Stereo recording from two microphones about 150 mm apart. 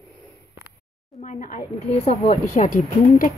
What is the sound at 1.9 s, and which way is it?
Speech, 45° left (ahead or behind).